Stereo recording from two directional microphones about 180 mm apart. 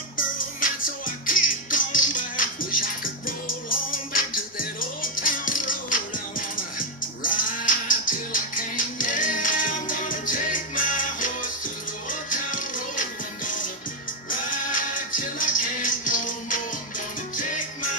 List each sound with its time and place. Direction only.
0.2 s music: 50° left (ahead or behind)